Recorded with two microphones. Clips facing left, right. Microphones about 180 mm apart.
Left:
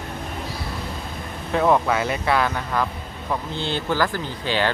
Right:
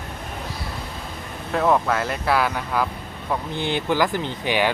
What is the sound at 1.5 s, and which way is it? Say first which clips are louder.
Speech: left 1 dB; centre (ahead or behind).